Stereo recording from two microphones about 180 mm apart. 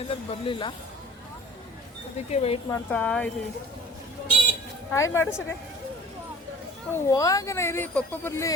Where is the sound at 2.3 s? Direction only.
35° left (ahead or behind).